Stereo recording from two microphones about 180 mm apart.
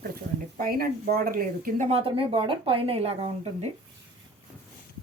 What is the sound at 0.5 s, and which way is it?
Speech, 55° right (ahead or behind).